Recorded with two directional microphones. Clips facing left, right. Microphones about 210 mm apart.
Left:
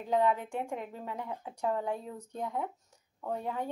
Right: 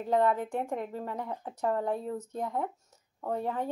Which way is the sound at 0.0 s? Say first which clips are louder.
Right 2 dB; 40° right (ahead or behind).